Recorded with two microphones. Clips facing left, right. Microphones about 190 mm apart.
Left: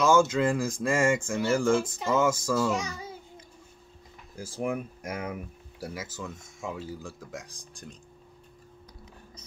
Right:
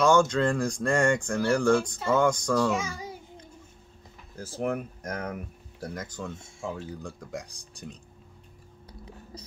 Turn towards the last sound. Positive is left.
turn(degrees=0)  # may be behind; listen again after turning